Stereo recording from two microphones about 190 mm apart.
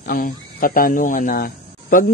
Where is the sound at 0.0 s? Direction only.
50° left (ahead or behind).